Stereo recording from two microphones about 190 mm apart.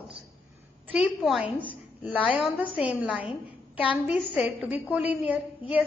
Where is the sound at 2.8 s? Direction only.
5° right (ahead or behind).